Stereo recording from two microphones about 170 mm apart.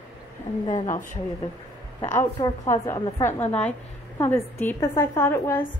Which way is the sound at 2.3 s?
25° left (ahead or behind).